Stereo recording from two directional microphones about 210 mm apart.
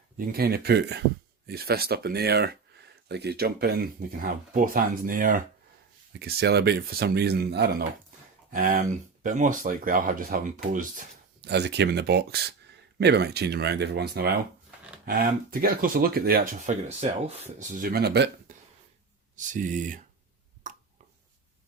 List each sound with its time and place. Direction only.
0.3 s speech: 45° right (ahead or behind)
19.4 s speech: 35° right (ahead or behind)
20.7 s a sound: 35° right (ahead or behind)